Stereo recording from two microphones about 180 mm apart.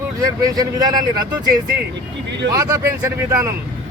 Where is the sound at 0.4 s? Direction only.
20° right (ahead or behind).